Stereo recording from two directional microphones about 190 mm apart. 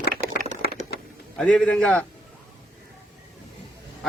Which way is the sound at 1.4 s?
5° left (ahead or behind).